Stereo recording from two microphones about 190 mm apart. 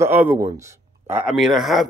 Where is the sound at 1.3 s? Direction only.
Centre (ahead or behind).